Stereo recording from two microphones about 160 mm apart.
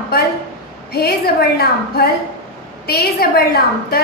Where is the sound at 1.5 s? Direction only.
75° left (ahead or behind).